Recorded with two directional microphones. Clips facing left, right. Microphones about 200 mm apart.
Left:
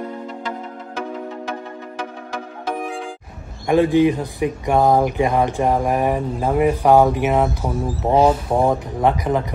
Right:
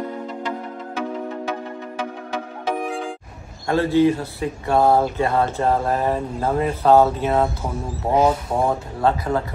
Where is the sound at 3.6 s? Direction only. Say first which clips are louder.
Left 2 dB; 15° left (ahead or behind).